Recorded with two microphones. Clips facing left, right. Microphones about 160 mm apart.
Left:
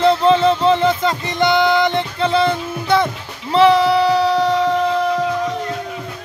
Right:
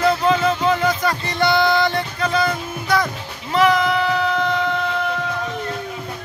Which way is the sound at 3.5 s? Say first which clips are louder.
Left 5 dB; 30° left (ahead or behind).